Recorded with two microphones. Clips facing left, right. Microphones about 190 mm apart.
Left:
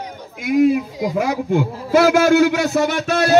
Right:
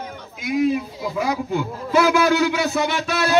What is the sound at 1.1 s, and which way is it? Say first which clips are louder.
A man's voice: left 4 dB; 50° left (ahead or behind).